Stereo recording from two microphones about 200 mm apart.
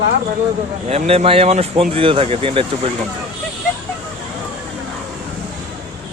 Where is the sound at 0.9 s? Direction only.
30° right (ahead or behind).